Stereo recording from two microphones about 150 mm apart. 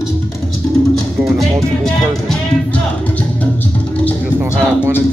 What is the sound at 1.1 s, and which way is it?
Music, centre (ahead or behind).